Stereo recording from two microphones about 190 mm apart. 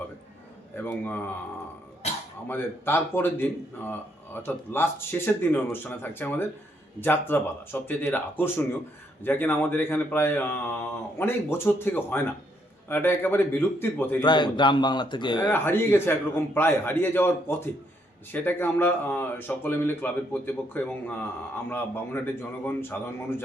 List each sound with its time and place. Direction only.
0.8 s speech: 10° left (ahead or behind)
2.5 s speech: 10° left (ahead or behind)
14.2 s a man's voice: 25° left (ahead or behind)
15.5 s speech: 10° left (ahead or behind)